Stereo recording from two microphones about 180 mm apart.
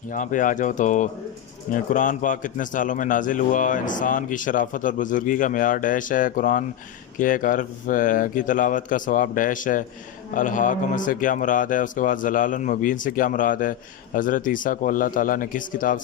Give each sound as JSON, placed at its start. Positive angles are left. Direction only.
{"t": 0.1, "sound": "a man's voice", "side_deg": 45}